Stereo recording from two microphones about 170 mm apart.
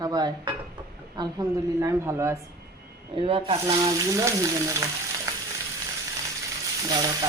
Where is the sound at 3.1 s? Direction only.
30° right (ahead or behind).